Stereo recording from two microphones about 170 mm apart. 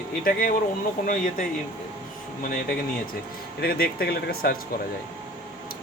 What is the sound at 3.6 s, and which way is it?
Speech, 65° left (ahead or behind).